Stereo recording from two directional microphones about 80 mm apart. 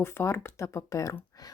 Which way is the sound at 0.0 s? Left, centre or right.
Left.